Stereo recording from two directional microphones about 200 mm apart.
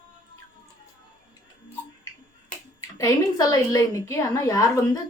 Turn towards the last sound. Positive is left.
turn(degrees=15)  # may be behind; listen again after turning